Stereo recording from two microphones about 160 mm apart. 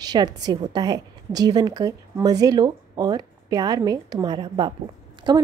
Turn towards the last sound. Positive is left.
turn(degrees=-25)  # may be behind; listen again after turning